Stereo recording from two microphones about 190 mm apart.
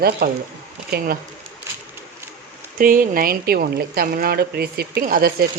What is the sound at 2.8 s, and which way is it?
Speech, 45° right (ahead or behind).